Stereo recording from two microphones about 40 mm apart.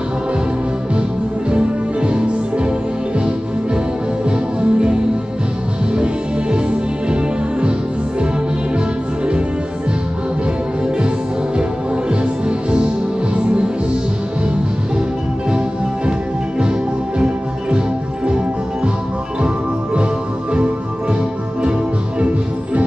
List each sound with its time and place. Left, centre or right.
2.0 s music: right
4.6 s music: right
7.1 s music: right
12.1 s music: right
16.1 s music: right
19.4 s music: right